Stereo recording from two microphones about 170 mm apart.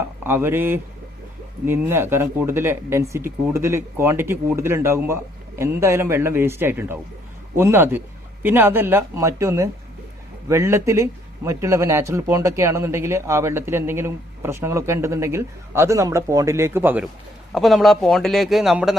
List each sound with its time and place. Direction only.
0.3 s speech: 15° right (ahead or behind)
17.5 s a man's voice: centre (ahead or behind)